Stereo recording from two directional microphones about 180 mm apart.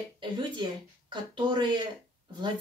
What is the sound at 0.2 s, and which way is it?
Speech, 25° right (ahead or behind).